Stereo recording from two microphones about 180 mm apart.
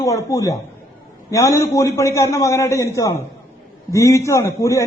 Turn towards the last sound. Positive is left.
turn(degrees=15)  # may be behind; listen again after turning